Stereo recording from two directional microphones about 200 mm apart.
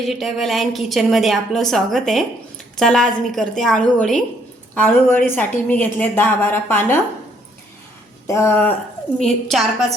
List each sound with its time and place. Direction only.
0.0 s a woman's voice: centre (ahead or behind)
8.3 s a woman's voice: 10° left (ahead or behind)